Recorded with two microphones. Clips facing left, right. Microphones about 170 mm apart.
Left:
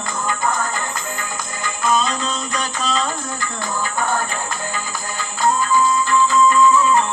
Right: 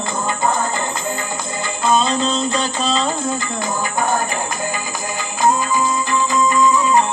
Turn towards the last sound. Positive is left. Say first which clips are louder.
# even
turn(degrees=-15)  # may be behind; listen again after turning